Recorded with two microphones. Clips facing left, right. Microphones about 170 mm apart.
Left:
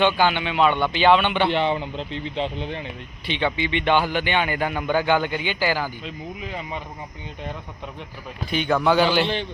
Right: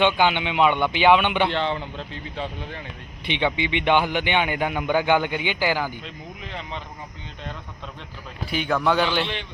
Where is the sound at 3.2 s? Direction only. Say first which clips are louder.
Even; 15° right (ahead or behind).